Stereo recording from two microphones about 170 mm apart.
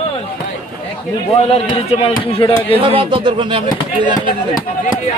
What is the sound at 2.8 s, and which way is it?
Speech, 30° right (ahead or behind).